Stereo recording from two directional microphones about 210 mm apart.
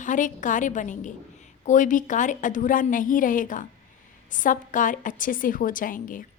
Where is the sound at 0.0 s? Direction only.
35° left (ahead or behind).